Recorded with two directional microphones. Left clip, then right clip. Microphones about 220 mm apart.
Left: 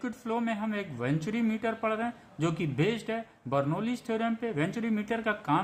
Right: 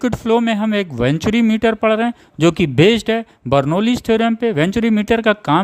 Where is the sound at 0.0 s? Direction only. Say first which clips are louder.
Right 17 dB; 50° right (ahead or behind).